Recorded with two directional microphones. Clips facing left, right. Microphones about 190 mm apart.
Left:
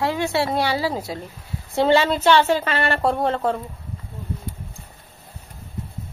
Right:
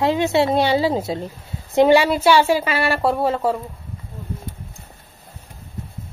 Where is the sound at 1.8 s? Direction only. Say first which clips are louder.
Right 4 dB; 15° right (ahead or behind).